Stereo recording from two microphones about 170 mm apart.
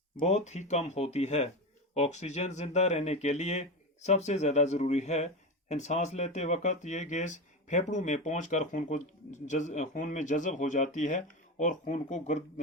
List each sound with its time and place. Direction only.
0.2 s speech: 40° left (ahead or behind)